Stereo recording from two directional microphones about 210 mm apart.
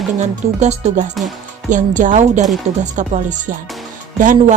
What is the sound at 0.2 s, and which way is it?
A woman's voice, 35° right (ahead or behind).